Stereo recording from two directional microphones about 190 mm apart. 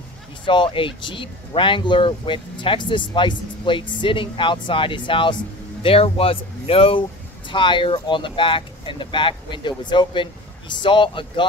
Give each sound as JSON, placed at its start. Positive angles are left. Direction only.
{"t": 0.5, "sound": "speech", "side_deg": 25}